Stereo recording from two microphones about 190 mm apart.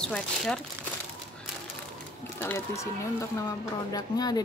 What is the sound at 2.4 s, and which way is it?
Speech, 10° left (ahead or behind).